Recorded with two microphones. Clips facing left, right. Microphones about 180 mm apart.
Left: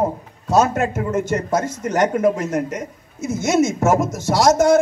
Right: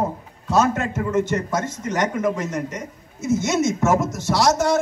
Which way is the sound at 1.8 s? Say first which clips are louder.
Left 6 dB; 55° left (ahead or behind).